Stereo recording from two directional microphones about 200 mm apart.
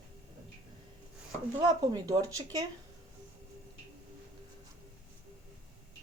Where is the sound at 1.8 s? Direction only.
20° right (ahead or behind).